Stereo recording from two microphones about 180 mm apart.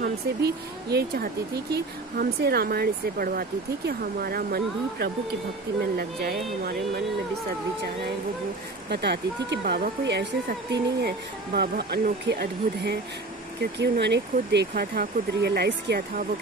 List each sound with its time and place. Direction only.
0.0 s speech: 65° right (ahead or behind)
8.8 s speech: 65° right (ahead or behind)
14.7 s speech: 60° right (ahead or behind)